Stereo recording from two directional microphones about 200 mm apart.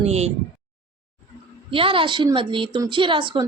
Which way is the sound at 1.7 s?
25° right (ahead or behind).